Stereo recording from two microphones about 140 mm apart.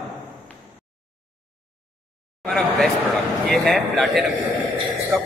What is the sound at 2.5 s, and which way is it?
A man's voice, 5° left (ahead or behind).